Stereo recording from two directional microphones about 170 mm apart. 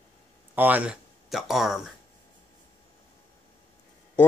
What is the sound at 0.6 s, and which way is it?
Speech, 10° right (ahead or behind).